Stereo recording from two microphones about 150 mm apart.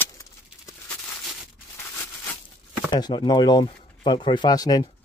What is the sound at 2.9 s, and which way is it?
Speech, 30° left (ahead or behind).